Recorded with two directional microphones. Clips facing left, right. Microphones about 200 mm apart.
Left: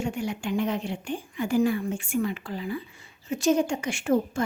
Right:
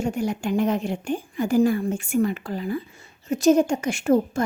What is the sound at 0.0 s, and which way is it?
A woman's voice, 40° right (ahead or behind).